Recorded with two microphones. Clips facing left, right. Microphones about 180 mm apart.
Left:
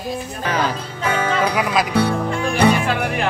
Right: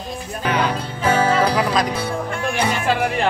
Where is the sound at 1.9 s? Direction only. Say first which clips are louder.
Left 8 dB; 65° left (ahead or behind).